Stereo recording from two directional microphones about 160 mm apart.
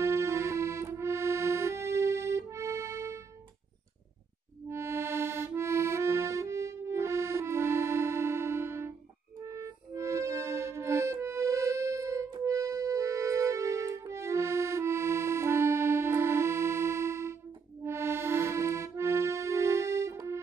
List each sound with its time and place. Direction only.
0.0 s music: 15° right (ahead or behind)
4.6 s accordion: 15° right (ahead or behind)
9.4 s music: 20° right (ahead or behind)
17.8 s accordion: 15° right (ahead or behind)